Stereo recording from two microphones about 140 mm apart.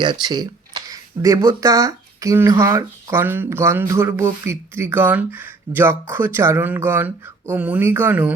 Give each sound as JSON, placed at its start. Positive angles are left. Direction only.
{"t": 0.0, "sound": "speech", "side_deg": -35}